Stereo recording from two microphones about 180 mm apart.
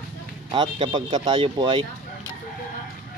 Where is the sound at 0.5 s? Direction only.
25° right (ahead or behind).